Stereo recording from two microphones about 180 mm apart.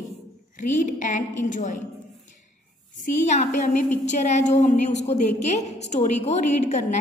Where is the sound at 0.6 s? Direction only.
45° left (ahead or behind).